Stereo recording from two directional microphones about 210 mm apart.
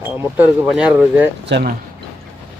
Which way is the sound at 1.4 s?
55° right (ahead or behind).